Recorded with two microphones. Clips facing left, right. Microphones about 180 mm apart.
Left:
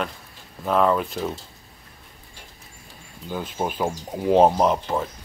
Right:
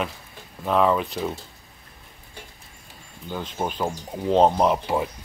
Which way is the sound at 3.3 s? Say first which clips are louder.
Left 1 dB; 5° left (ahead or behind).